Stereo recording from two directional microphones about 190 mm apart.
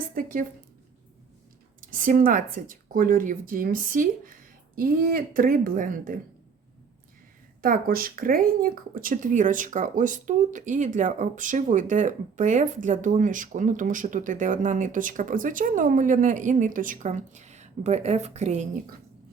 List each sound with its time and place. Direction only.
0.1 s speech: 45° right (ahead or behind)
1.8 s speech: 45° right (ahead or behind)
7.6 s speech: 50° right (ahead or behind)